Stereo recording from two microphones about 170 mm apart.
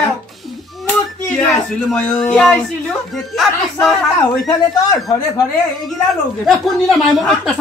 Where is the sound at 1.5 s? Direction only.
5° left (ahead or behind).